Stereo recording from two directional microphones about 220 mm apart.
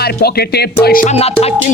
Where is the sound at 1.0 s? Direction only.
30° left (ahead or behind).